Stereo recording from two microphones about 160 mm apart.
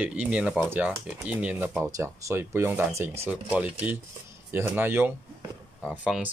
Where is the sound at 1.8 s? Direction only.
20° right (ahead or behind).